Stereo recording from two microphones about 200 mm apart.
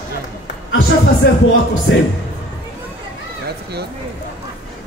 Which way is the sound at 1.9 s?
65° left (ahead or behind).